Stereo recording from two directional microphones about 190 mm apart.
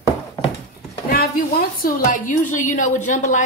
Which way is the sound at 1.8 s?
45° left (ahead or behind).